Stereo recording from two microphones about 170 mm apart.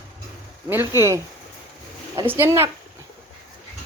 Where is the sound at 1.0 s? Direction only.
15° right (ahead or behind).